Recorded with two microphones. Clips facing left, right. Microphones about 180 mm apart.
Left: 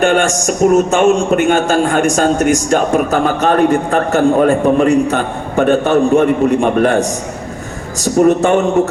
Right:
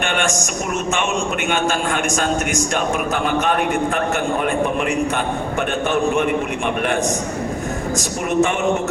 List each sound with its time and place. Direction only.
0.0 s a man's voice: 40° left (ahead or behind)
8.0 s a man's voice: 35° left (ahead or behind)